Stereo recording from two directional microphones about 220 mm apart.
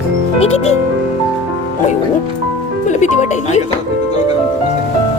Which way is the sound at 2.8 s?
35° left (ahead or behind).